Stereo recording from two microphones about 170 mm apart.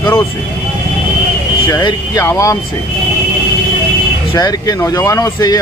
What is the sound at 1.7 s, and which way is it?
Speech, 20° left (ahead or behind).